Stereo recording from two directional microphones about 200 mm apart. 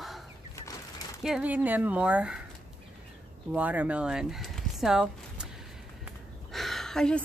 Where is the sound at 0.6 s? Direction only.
15° left (ahead or behind).